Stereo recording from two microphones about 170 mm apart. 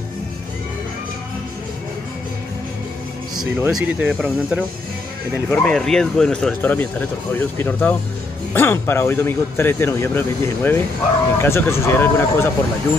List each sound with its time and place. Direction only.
3.6 s a man's voice: 10° right (ahead or behind); by 12.4 s 15° left (ahead or behind)